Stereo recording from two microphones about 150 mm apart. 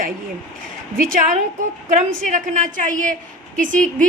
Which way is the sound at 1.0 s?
55° right (ahead or behind).